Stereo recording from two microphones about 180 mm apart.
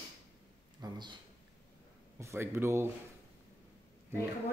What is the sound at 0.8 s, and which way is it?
Speech, 25° right (ahead or behind).